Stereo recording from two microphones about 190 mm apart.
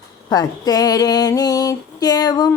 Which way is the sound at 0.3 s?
20° left (ahead or behind).